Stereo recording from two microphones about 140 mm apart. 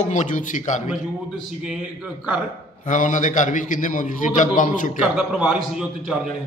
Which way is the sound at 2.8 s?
60° left (ahead or behind).